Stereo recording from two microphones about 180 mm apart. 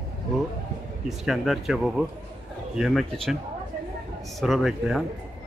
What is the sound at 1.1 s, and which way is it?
Speech, centre (ahead or behind).